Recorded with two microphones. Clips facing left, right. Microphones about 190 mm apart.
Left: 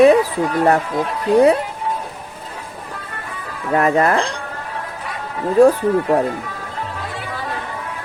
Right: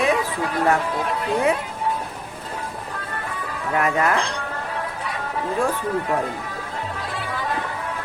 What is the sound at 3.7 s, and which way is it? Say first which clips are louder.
Speech: left 6 dB; 40° left (ahead or behind).